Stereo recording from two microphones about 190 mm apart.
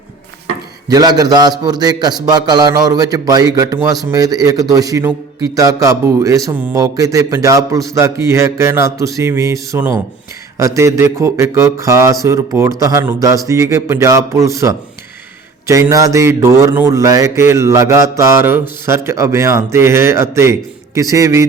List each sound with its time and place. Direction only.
0.9 s a man's voice: 20° right (ahead or behind)